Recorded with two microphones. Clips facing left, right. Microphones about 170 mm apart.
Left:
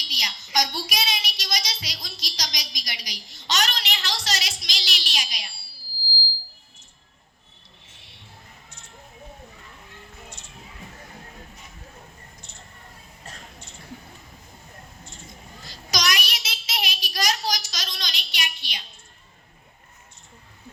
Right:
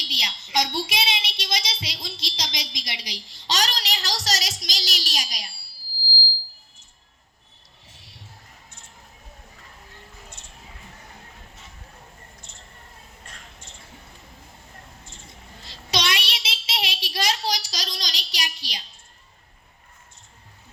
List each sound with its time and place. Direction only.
0.0 s child singing: 30° right (ahead or behind)
7.9 s a sound: 40° right (ahead or behind)
15.6 s child singing: 30° right (ahead or behind)